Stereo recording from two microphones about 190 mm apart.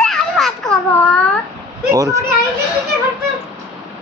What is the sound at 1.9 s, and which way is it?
Speech, 15° right (ahead or behind).